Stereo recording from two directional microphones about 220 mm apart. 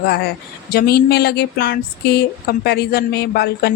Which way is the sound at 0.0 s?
50° left (ahead or behind).